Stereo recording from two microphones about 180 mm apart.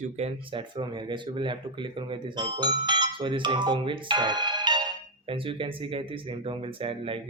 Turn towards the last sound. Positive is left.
turn(degrees=-30)  # may be behind; listen again after turning